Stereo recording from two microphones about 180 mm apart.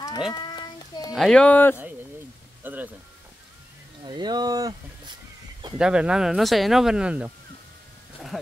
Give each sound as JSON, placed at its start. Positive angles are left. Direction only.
{"t": 0.3, "sound": "a sound", "side_deg": 20}
{"t": 1.1, "sound": "speech", "side_deg": 0}
{"t": 2.6, "sound": "speech", "side_deg": -10}
{"t": 4.0, "sound": "speech", "side_deg": -25}
{"t": 5.8, "sound": "speech", "side_deg": -5}